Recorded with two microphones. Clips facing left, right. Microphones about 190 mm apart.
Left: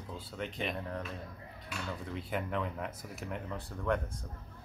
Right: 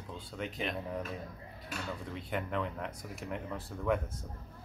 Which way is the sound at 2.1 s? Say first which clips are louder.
Even; centre (ahead or behind).